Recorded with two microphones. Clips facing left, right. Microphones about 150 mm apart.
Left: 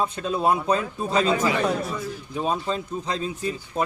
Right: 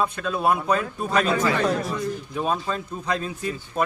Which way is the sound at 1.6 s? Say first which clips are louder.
Right 1 dB; centre (ahead or behind).